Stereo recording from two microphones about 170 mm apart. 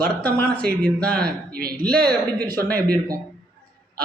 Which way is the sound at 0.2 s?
10° left (ahead or behind).